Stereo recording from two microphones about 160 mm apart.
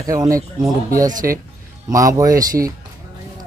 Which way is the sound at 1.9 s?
20° right (ahead or behind).